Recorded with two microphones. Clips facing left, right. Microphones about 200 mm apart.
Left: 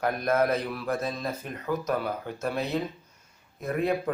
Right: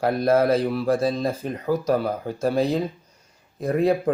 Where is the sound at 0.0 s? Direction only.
30° right (ahead or behind).